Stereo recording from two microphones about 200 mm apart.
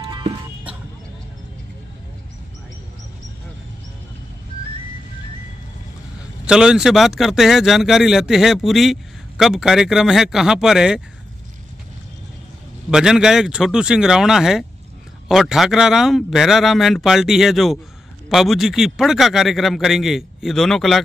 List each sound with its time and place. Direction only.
0.0 s music: 25° right (ahead or behind)
6.4 s a man's voice: 5° right (ahead or behind)
12.9 s a man's voice: centre (ahead or behind)